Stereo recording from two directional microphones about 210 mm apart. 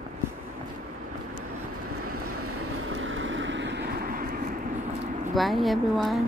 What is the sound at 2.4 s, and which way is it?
Vehicle, 80° right.